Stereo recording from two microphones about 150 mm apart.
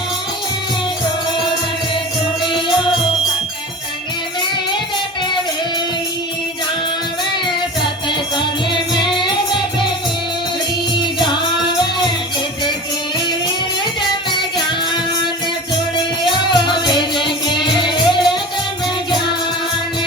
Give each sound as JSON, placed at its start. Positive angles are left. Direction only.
{"t": 2.4, "sound": "music", "side_deg": 30}
{"t": 7.8, "sound": "music", "side_deg": 30}
{"t": 16.2, "sound": "music", "side_deg": 30}